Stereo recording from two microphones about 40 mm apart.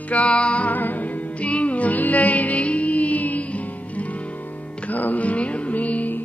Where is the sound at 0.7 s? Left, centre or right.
Left.